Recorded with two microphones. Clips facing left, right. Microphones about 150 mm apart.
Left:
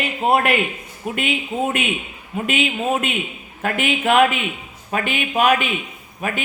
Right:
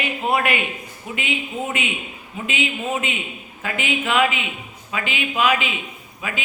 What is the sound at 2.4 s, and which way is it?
A man's voice, 60° left (ahead or behind).